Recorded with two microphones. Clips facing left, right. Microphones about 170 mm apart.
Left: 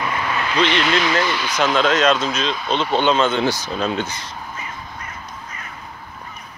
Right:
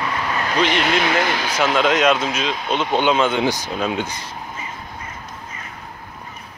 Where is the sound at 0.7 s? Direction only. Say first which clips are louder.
Even; 50° right (ahead or behind).